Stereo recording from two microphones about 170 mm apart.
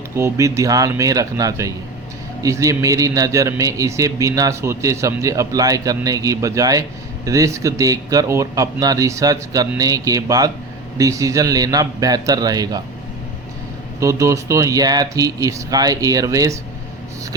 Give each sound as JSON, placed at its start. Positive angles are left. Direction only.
{"t": 0.2, "sound": "a man's voice", "side_deg": -15}
{"t": 14.0, "sound": "a man's voice", "side_deg": -20}